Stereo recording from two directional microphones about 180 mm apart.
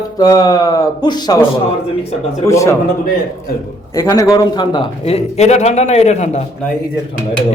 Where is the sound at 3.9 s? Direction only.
15° left (ahead or behind); by 6.4 s 40° left (ahead or behind).